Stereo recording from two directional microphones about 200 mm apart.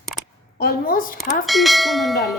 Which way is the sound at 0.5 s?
50° left (ahead or behind).